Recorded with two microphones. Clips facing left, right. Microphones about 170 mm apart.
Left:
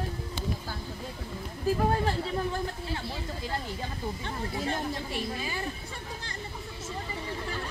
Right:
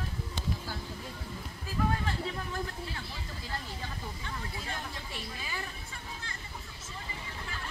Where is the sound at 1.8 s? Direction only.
35° left (ahead or behind).